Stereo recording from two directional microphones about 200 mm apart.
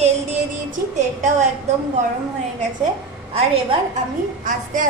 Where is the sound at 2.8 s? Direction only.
30° right (ahead or behind).